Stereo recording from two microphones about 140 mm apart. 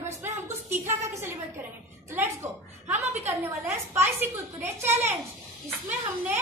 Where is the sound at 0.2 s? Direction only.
20° right (ahead or behind).